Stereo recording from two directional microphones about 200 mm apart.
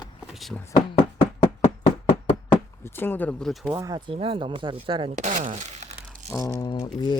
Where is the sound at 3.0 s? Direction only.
10° left (ahead or behind).